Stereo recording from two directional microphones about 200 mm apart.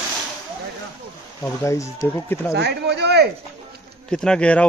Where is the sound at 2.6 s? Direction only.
55° right (ahead or behind).